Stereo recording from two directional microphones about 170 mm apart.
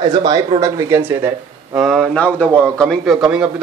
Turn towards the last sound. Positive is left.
turn(degrees=-5)  # may be behind; listen again after turning